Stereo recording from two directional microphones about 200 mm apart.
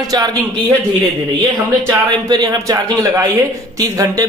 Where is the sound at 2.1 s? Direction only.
20° right (ahead or behind).